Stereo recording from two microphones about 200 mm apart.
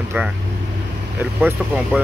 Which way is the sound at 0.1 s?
10° right (ahead or behind).